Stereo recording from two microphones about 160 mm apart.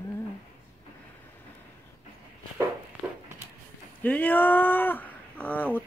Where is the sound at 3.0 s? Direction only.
15° right (ahead or behind).